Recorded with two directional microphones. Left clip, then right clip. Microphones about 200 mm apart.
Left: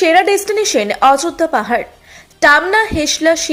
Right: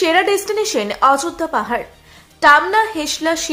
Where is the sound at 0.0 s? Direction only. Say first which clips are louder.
Left 4 dB; 15° left (ahead or behind).